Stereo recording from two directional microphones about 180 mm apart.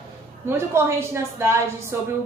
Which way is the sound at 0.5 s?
15° right (ahead or behind).